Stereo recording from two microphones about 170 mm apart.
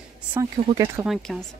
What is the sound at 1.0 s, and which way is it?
Speech, centre (ahead or behind).